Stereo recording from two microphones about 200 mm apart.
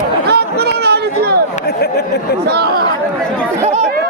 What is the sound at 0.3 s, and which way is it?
Chatter, 55° right (ahead or behind).